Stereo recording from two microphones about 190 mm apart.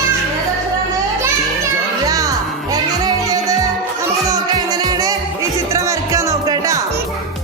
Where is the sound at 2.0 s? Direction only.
20° right (ahead or behind).